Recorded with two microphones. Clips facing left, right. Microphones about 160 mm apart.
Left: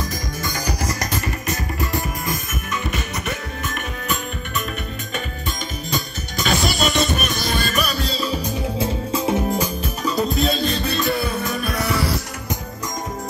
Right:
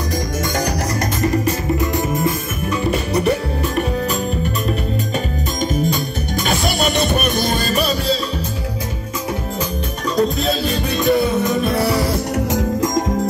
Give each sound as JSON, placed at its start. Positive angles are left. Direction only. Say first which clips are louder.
{"t": 2.9, "sound": "music", "louder": "right 10 dB", "side_deg": -35}
{"t": 6.4, "sound": "music", "louder": "right 1 dB", "side_deg": -55}
{"t": 10.1, "sound": "music", "louder": "right 4 dB", "side_deg": 0}